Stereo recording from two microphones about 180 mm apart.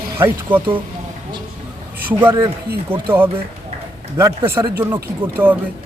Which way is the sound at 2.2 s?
15° right (ahead or behind).